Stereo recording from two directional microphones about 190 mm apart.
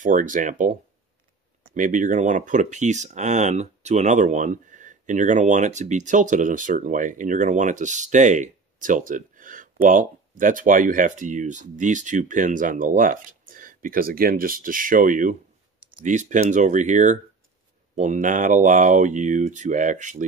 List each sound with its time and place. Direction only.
0.0 s speech: 45° right (ahead or behind)